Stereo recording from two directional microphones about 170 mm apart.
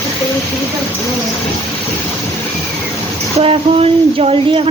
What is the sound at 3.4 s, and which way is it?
Speech, 35° right (ahead or behind).